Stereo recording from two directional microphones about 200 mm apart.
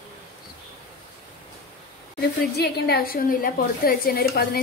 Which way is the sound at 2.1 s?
55° left (ahead or behind).